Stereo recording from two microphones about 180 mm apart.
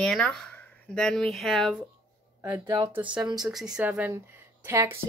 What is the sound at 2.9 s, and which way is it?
Speech, 5° right (ahead or behind).